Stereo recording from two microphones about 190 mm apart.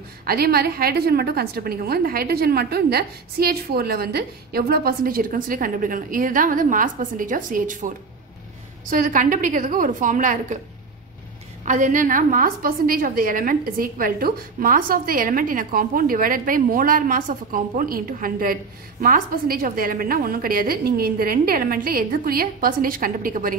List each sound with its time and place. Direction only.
0.2 s a woman's voice: 50° right (ahead or behind)
8.9 s a woman's voice: 45° right (ahead or behind)
11.6 s a woman's voice: 40° right (ahead or behind)